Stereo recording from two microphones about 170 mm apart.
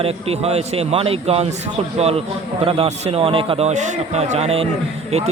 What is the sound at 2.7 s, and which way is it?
A man's voice, 35° right (ahead or behind).